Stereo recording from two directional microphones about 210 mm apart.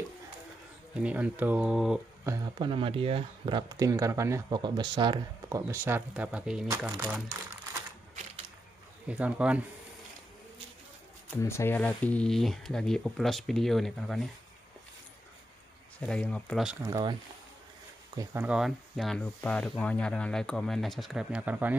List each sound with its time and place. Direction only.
0.9 s speech: 5° right (ahead or behind)
2.2 s speech: 15° right (ahead or behind)
9.0 s speech: 5° right (ahead or behind)
11.4 s speech: 10° left (ahead or behind)
16.1 s speech: 5° left (ahead or behind)
16.8 s speech: 20° right (ahead or behind)